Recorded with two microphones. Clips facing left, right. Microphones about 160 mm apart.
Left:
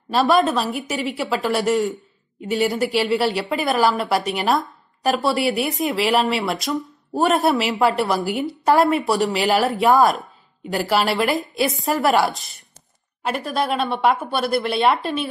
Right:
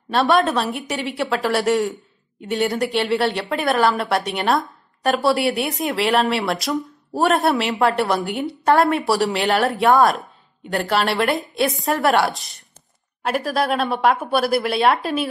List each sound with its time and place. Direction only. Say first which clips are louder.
0.1 s a woman's voice: even; centre (ahead or behind)